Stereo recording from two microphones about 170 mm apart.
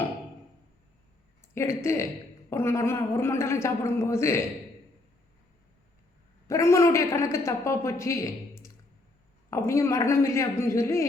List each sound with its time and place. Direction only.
1.5 s a woman's voice: 15° left (ahead or behind)
6.5 s a woman's voice: 15° left (ahead or behind)